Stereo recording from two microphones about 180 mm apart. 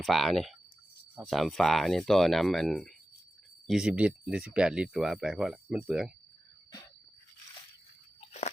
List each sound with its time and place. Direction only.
0.0 s speech: centre (ahead or behind)
8.2 s crunch: 40° left (ahead or behind)